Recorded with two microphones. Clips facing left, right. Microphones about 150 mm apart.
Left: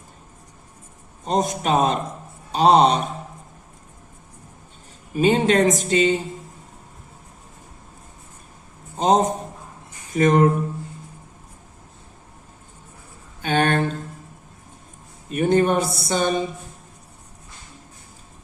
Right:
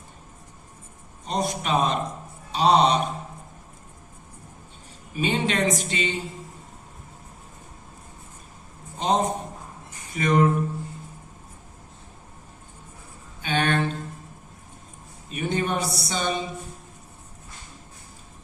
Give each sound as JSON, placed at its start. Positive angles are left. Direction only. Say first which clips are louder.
{"t": 1.2, "sound": "a woman's voice", "louder": "left 5 dB", "side_deg": 45}
{"t": 5.1, "sound": "a woman's voice", "louder": "left 8 dB", "side_deg": 45}
{"t": 9.0, "sound": "a man's voice", "louder": "left 5 dB", "side_deg": 40}
{"t": 13.4, "sound": "a sound", "louder": "left 4 dB", "side_deg": 45}
{"t": 15.3, "sound": "speech", "louder": "left 8 dB", "side_deg": 50}